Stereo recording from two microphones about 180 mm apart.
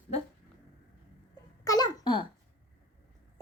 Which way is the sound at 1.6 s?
20° left (ahead or behind).